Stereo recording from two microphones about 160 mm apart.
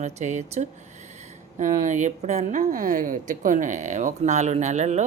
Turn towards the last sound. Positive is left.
turn(degrees=-45)  # may be behind; listen again after turning